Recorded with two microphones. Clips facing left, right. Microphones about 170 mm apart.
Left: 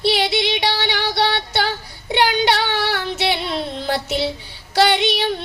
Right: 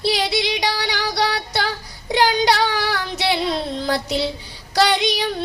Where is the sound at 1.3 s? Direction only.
35° right (ahead or behind).